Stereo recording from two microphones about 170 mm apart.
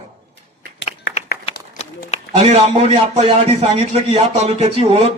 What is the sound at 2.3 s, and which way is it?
A man's voice, 40° right (ahead or behind).